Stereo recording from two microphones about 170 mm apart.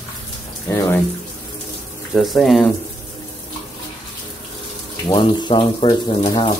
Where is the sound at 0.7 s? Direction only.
15° left (ahead or behind).